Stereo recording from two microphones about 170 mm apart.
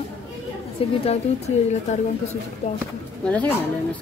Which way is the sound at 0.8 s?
35° left (ahead or behind).